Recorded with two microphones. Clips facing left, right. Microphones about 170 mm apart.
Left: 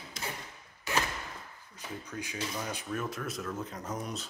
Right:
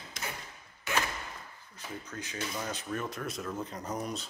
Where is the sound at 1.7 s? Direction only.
15° left (ahead or behind).